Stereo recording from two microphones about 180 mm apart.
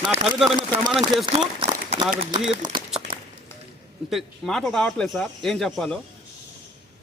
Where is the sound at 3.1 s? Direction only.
50° right (ahead or behind).